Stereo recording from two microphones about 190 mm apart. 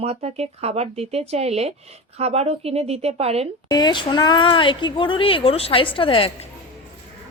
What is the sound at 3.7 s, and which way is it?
Speech, 25° left (ahead or behind).